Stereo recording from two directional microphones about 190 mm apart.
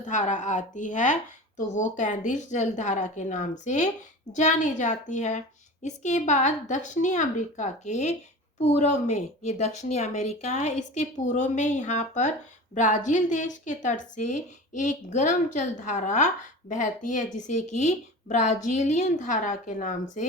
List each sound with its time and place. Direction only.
0.0 s a woman's voice: 40° left (ahead or behind)